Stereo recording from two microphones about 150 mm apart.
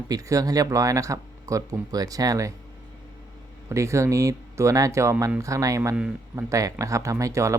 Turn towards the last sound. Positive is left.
turn(degrees=-20)  # may be behind; listen again after turning